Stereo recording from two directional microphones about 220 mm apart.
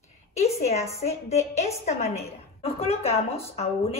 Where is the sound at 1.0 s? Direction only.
30° left (ahead or behind).